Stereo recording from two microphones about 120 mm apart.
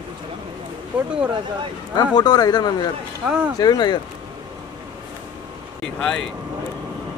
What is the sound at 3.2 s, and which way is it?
Speech, 10° right (ahead or behind).